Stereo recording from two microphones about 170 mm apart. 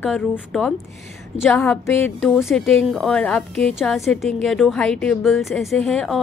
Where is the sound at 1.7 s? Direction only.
10° left (ahead or behind).